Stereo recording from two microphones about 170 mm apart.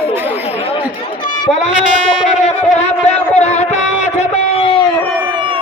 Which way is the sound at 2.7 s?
40° left (ahead or behind).